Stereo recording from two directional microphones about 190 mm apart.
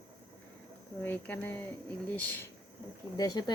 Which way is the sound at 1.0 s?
10° left (ahead or behind).